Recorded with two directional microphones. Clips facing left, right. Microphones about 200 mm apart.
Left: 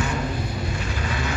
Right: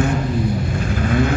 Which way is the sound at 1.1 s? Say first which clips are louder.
Right 12 dB; 50° right (ahead or behind).